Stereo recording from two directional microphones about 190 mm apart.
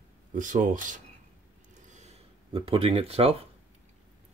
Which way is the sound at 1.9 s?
35° right (ahead or behind).